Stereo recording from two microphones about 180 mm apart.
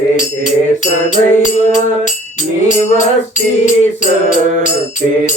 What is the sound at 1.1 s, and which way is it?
Music, 40° left (ahead or behind).